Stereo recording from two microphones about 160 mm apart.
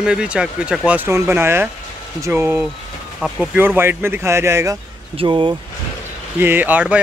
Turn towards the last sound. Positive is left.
turn(degrees=-10)  # may be behind; listen again after turning